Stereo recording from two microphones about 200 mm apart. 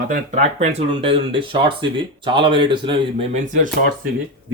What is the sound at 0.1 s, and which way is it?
Speech, 35° right (ahead or behind).